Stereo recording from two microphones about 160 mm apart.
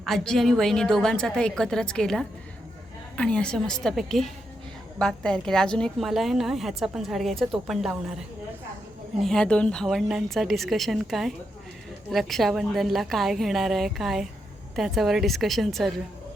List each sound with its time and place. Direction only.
0.0 s a woman's voice: centre (ahead or behind)
9.1 s a woman's voice: centre (ahead or behind)